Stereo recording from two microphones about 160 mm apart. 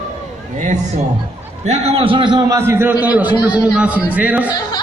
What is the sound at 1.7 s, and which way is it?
Speech, 40° right (ahead or behind).